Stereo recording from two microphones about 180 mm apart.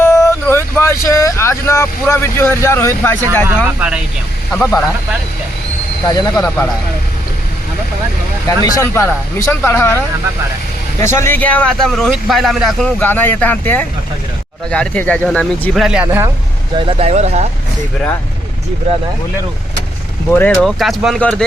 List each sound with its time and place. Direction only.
0.0 s vehicle: 15° left (ahead or behind)
3.4 s speech: 5° right (ahead or behind)
4.5 s speech: 15° left (ahead or behind)
6.1 s speech: 20° left (ahead or behind)
8.4 s speech: 20° left (ahead or behind)
11.0 s speech: 15° left (ahead or behind)
13.0 s speech: 10° left (ahead or behind); by 16.3 s 10° right (ahead or behind)
16.7 s speech: 30° right (ahead or behind)
20.3 s speech: 5° left (ahead or behind)